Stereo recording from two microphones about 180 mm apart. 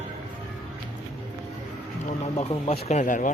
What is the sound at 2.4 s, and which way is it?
Speech, 35° left (ahead or behind).